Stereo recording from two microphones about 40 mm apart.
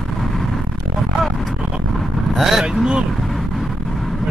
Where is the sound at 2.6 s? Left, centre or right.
Centre.